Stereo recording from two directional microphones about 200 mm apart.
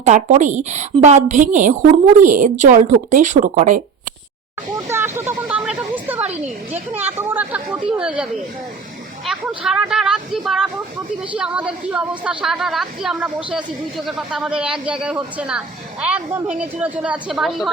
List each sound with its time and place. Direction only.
0.0 s a woman's voice: 35° right (ahead or behind)
4.9 s a sound: 10° right (ahead or behind)
6.7 s a woman's voice: 10° right (ahead or behind)